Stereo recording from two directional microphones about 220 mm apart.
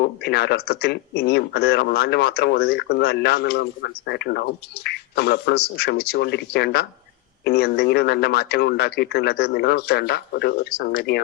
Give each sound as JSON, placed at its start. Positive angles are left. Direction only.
{"t": 0.0, "sound": "speech", "side_deg": 50}